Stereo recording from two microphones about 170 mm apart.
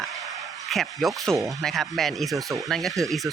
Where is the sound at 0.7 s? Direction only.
Centre (ahead or behind).